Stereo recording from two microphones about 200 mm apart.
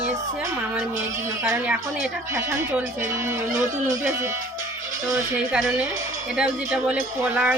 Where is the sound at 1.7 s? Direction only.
Centre (ahead or behind).